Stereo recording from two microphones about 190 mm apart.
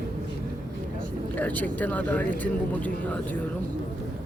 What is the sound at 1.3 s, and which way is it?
Speech, 10° left (ahead or behind).